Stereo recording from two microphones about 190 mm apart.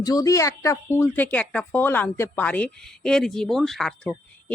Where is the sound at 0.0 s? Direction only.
20° left (ahead or behind).